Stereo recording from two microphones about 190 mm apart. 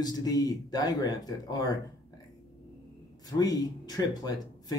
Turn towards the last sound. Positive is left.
turn(degrees=20)  # may be behind; listen again after turning